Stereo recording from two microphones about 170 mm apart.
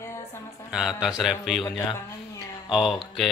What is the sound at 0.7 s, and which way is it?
Speech, 5° right (ahead or behind).